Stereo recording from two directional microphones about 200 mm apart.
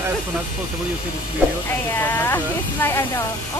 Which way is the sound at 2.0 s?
10° left (ahead or behind).